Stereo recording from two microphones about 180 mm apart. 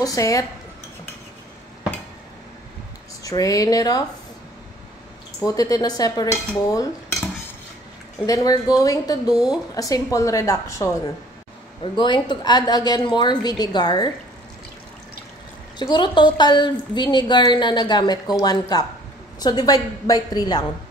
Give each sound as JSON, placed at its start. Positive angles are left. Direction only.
{"t": 0.0, "sound": "a woman's voice", "side_deg": 20}
{"t": 3.3, "sound": "a woman's voice", "side_deg": 20}
{"t": 5.4, "sound": "a woman's voice", "side_deg": 20}
{"t": 8.3, "sound": "a woman's voice", "side_deg": 20}
{"t": 11.8, "sound": "a woman's voice", "side_deg": 25}
{"t": 15.8, "sound": "a woman's voice", "side_deg": 25}